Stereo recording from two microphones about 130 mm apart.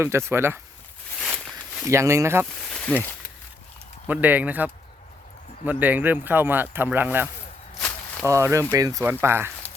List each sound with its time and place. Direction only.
0.0 s speech: 20° right (ahead or behind)
1.9 s speech: 20° right (ahead or behind)
2.6 s snake: 5° left (ahead or behind)
4.0 s speech: 15° right (ahead or behind)